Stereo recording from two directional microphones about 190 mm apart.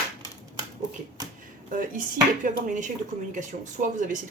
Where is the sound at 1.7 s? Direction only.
45° right (ahead or behind).